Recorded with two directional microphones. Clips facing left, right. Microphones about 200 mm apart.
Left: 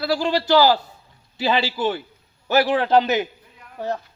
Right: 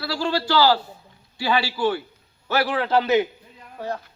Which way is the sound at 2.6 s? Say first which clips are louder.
Left 2 dB; 20° left (ahead or behind).